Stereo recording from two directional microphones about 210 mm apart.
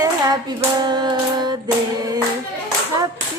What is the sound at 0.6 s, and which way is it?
Hands, 20° right (ahead or behind).